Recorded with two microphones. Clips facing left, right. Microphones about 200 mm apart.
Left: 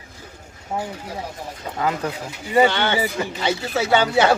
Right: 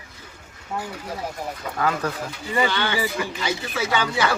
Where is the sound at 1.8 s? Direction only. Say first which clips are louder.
Left 1 dB; 20° left (ahead or behind).